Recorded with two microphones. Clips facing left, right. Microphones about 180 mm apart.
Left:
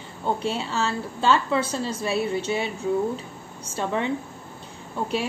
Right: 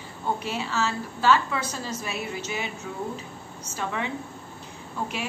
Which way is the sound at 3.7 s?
30° left (ahead or behind).